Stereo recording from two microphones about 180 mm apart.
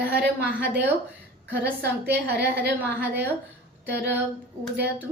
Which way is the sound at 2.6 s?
70° right (ahead or behind).